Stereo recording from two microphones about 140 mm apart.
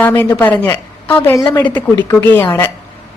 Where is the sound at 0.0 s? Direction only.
10° left (ahead or behind).